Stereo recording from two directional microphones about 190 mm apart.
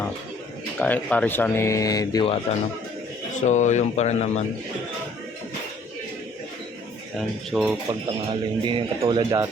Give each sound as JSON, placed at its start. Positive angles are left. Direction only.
{"t": 0.8, "sound": "speech", "side_deg": 10}
{"t": 3.3, "sound": "speech", "side_deg": 40}
{"t": 7.2, "sound": "speech", "side_deg": 0}
{"t": 7.9, "sound": "speech", "side_deg": -25}